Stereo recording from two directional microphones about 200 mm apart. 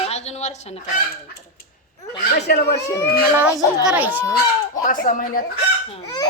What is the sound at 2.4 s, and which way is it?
Speech, 55° left (ahead or behind).